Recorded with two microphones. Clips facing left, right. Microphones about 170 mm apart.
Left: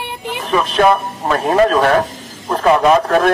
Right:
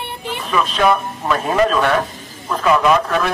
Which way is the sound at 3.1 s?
45° left (ahead or behind).